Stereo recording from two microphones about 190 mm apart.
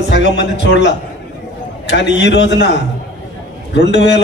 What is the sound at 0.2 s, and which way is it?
Speech, 65° left (ahead or behind).